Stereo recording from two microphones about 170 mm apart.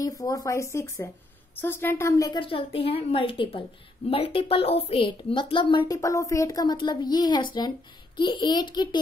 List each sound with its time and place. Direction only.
0.0 s speech: 20° left (ahead or behind)
2.4 s a woman's voice: 35° left (ahead or behind)